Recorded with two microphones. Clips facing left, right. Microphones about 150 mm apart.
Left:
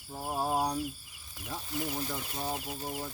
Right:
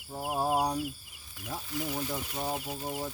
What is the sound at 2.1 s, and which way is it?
Speech, 20° right (ahead or behind).